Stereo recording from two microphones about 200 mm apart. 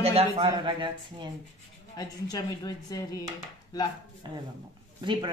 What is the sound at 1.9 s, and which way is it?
Speech, 20° left (ahead or behind).